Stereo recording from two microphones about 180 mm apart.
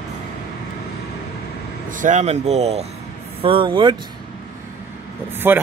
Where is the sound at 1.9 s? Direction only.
45° right (ahead or behind); by 3.9 s 25° right (ahead or behind).